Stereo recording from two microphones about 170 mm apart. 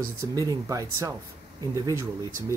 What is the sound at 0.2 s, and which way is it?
Speech, 20° right (ahead or behind).